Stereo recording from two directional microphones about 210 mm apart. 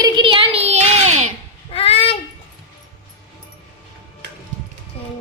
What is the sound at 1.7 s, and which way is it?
Child singing, 30° left (ahead or behind).